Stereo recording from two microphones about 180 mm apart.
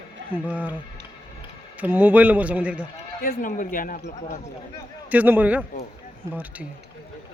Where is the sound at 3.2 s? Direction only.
50° left (ahead or behind).